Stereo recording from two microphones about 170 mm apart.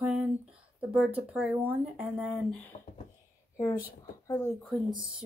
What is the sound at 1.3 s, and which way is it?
Speech, 5° right (ahead or behind).